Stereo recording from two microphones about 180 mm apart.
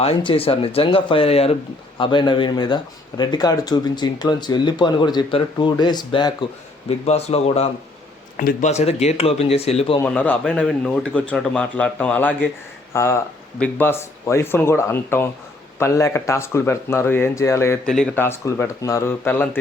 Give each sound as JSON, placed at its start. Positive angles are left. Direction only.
{"t": 0.0, "sound": "speech", "side_deg": 30}
{"t": 6.8, "sound": "speech", "side_deg": 35}
{"t": 10.0, "sound": "speech", "side_deg": 5}
{"t": 17.8, "sound": "speech", "side_deg": 5}